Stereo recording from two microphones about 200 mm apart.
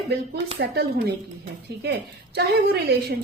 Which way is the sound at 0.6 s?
50° right (ahead or behind).